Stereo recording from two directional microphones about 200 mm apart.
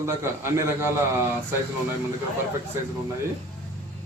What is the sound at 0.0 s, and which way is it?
Speech, 15° right (ahead or behind).